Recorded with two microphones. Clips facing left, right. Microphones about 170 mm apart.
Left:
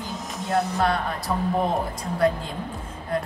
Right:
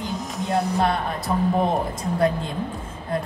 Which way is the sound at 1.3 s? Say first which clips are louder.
Right 3 dB; 20° right (ahead or behind).